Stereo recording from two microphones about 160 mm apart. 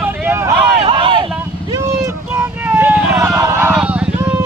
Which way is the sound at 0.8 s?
35° right (ahead or behind).